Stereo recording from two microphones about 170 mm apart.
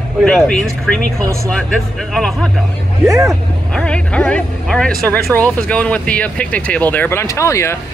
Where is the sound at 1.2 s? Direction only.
15° right (ahead or behind).